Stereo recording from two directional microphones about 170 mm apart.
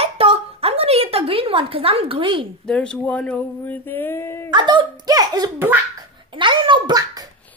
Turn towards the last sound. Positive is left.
turn(degrees=-20)  # may be behind; listen again after turning